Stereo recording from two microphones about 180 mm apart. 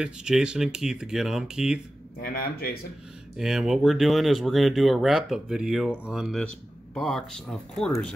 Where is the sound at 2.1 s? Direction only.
55° left (ahead or behind).